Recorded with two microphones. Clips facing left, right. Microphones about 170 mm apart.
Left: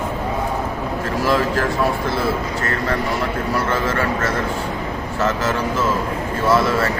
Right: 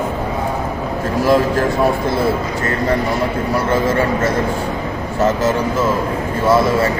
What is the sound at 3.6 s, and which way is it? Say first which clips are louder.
A man's voice: right 5 dB; 15° right (ahead or behind).